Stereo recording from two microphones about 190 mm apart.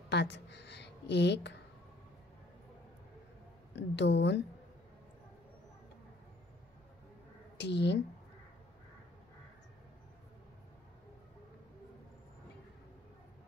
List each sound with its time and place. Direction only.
0.1 s a sound: 65° left (ahead or behind)
3.7 s a woman's voice: 65° left (ahead or behind)
7.5 s speech: 65° left (ahead or behind)